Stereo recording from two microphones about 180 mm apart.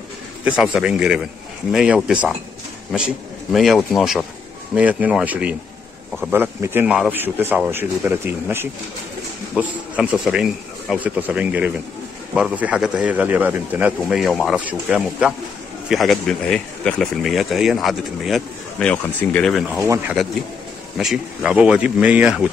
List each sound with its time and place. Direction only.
0.5 s speech: 5° right (ahead or behind)
19.7 s speech: 15° right (ahead or behind)
21.0 s speech: 5° right (ahead or behind)